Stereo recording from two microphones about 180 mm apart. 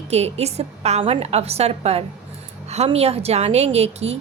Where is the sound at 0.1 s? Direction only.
35° right (ahead or behind).